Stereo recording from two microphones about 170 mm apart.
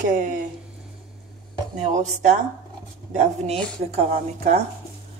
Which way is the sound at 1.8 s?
45° right (ahead or behind).